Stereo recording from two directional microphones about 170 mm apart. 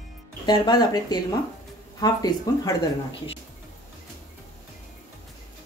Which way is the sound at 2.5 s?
20° left (ahead or behind).